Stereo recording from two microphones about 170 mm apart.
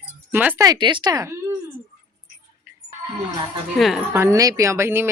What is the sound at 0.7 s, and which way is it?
Speech, 25° right (ahead or behind).